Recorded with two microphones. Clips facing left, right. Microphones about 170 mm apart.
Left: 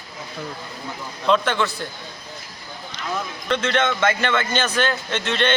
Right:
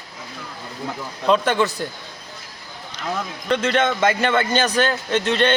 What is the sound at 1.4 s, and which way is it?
Speech, 40° right (ahead or behind).